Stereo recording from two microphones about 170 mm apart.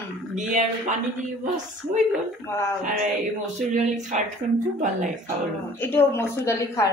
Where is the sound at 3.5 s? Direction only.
45° right (ahead or behind).